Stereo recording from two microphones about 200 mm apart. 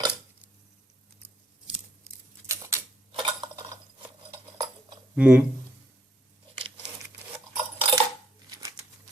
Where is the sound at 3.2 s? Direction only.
25° right (ahead or behind).